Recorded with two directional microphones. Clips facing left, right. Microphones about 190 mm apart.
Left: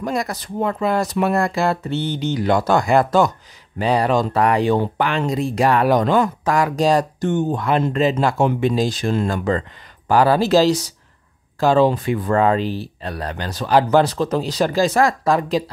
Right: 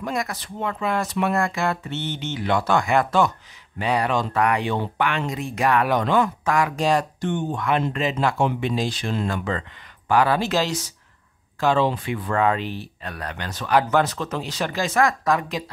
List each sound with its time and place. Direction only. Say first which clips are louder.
0.0 s speech: left 4 dB; 35° left (ahead or behind)